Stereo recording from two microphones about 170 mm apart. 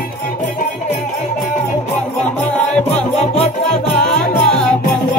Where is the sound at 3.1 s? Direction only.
40° left (ahead or behind).